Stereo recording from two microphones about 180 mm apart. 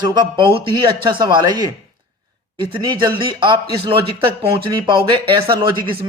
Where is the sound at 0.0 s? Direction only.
25° right (ahead or behind).